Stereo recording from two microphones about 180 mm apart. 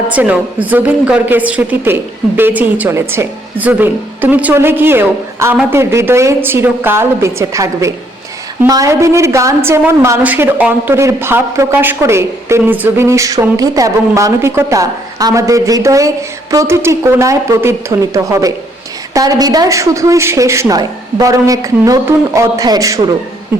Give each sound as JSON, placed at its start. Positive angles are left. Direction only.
{"t": 0.1, "sound": "a woman's voice", "side_deg": -10}